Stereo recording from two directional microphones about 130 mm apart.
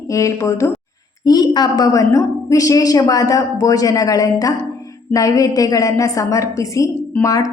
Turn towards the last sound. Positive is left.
turn(degrees=25)  # may be behind; listen again after turning